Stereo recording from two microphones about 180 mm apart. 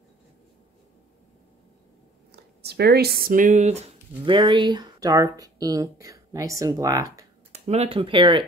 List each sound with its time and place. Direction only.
2.3 s speech: 65° right (ahead or behind); by 3.9 s 35° right (ahead or behind)
4.3 s speech: 25° right (ahead or behind)
7.5 s speech: 35° right (ahead or behind)